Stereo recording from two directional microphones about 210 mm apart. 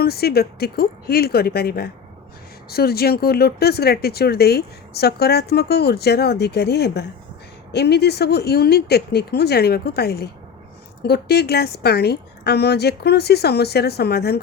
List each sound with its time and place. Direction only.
0.0 s speech: 50° left (ahead or behind)